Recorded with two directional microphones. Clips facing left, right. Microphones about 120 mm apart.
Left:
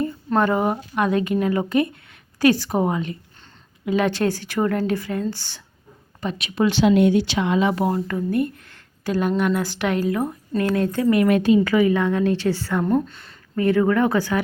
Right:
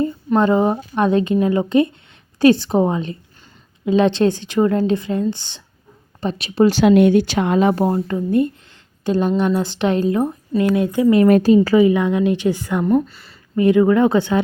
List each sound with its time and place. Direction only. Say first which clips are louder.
0.3 s speech: right 4 dB; 25° right (ahead or behind)
6.1 s speech: right 6 dB; 35° right (ahead or behind)
6.8 s speech: right 3 dB; 60° right (ahead or behind); by 7.9 s 45° right (ahead or behind)
7.9 s a woman's voice: right 3 dB; 25° right (ahead or behind)
11.3 s speech: right 5 dB; 40° right (ahead or behind)
11.9 s a woman's voice: right 3 dB; 15° right (ahead or behind)
12.8 s speech: right 5 dB; 5° right (ahead or behind)
13.6 s speech: right 5 dB; 20° right (ahead or behind)